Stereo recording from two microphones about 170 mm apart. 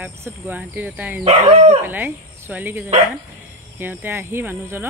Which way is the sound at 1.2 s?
40° right (ahead or behind).